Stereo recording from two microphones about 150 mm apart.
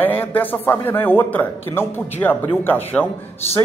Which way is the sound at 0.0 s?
10° left (ahead or behind).